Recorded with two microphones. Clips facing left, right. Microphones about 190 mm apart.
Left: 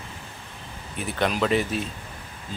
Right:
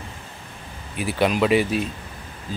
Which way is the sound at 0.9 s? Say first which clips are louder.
Right 4 dB; 5° right (ahead or behind).